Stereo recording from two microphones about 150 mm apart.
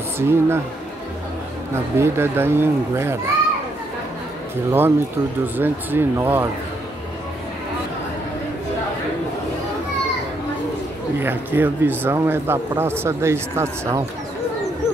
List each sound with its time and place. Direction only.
0.2 s speech: 15° right (ahead or behind)
2.0 s speech: 15° right (ahead or behind)
4.6 s speech: 15° right (ahead or behind)
11.1 s speech: 15° right (ahead or behind)